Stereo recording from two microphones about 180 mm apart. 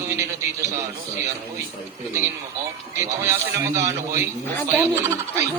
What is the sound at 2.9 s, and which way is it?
Speech, 15° right (ahead or behind).